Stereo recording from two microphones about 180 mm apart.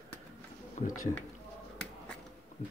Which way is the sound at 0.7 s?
45° left (ahead or behind).